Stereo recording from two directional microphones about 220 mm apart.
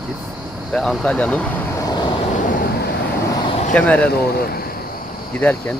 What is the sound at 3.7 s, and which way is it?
Speech, 5° left (ahead or behind).